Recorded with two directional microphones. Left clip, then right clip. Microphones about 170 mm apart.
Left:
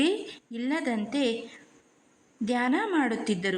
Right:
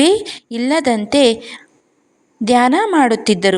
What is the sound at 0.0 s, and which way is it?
A woman's voice, 45° right (ahead or behind).